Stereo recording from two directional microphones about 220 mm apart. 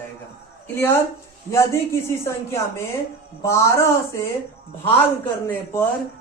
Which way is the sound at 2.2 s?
10° left (ahead or behind).